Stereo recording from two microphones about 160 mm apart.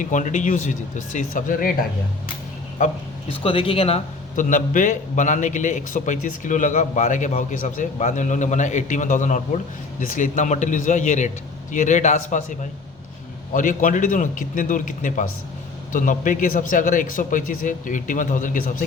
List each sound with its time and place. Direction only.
0.0 s a man's voice: 50° left (ahead or behind)
2.8 s a man's voice: 50° left (ahead or behind)
3.2 s speech: 35° left (ahead or behind)
4.4 s a man's voice: 55° left (ahead or behind)
13.5 s a man's voice: 55° left (ahead or behind)